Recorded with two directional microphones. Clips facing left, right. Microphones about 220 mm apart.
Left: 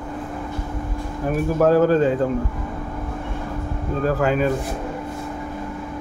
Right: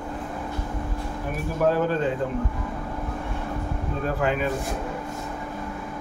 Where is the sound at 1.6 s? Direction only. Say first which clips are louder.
Left 6 dB; 40° left (ahead or behind).